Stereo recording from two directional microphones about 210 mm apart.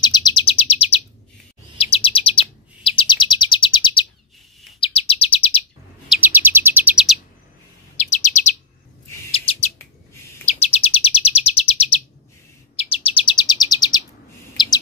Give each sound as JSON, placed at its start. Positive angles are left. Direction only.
{"t": 0.0, "sound": "chirp", "side_deg": 20}
{"t": 6.0, "sound": "chirp", "side_deg": -10}
{"t": 8.1, "sound": "chirp", "side_deg": 35}
{"t": 9.5, "sound": "bird", "side_deg": 25}
{"t": 10.4, "sound": "chirp", "side_deg": 30}
{"t": 12.8, "sound": "chirp", "side_deg": 25}